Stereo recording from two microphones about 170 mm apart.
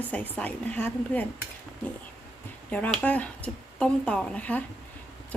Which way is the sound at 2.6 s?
10° left (ahead or behind).